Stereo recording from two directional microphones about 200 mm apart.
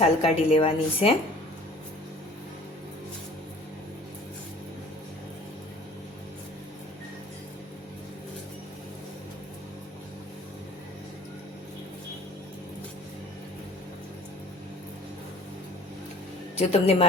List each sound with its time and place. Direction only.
0.0 s a woman's voice: 30° left (ahead or behind)
16.6 s a woman's voice: 30° left (ahead or behind)